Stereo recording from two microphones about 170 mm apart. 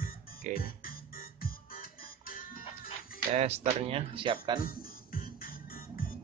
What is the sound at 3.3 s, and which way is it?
Speech, 40° right (ahead or behind).